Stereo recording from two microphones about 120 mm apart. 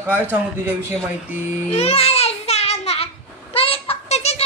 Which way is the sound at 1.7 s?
60° left (ahead or behind).